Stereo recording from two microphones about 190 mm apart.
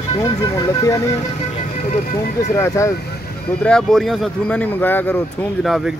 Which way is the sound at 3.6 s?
5° left (ahead or behind).